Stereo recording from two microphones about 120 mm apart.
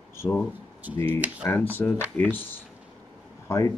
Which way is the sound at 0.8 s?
15° right (ahead or behind).